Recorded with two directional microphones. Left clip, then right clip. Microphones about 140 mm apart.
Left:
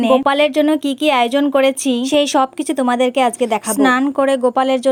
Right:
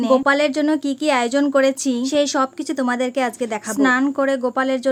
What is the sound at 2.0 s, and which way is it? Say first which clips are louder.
Speech: left 4 dB; 25° left (ahead or behind).